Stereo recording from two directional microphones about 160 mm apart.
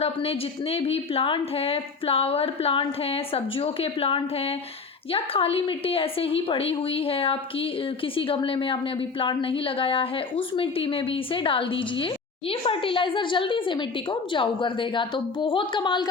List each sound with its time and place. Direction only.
0.0 s a woman's voice: 35° left (ahead or behind)